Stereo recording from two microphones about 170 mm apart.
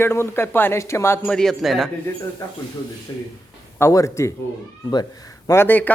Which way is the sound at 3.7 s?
15° left (ahead or behind).